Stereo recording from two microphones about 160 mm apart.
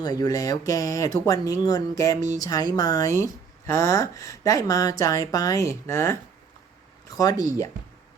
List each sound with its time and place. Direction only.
0.0 s speech: 25° left (ahead or behind)
7.2 s speech: 25° left (ahead or behind)